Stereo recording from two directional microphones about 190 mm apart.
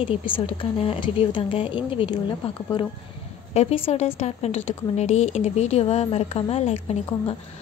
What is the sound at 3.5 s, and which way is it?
A woman's voice, 35° left (ahead or behind).